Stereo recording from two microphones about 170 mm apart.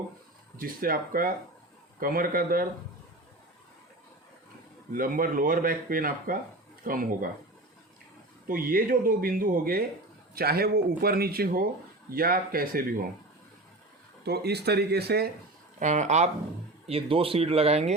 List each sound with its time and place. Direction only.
0.5 s speech: 60° right (ahead or behind)
4.9 s speech: 55° right (ahead or behind)
8.4 s speech: 55° right (ahead or behind)
14.3 s speech: 70° right (ahead or behind)
15.8 s speech: 45° right (ahead or behind)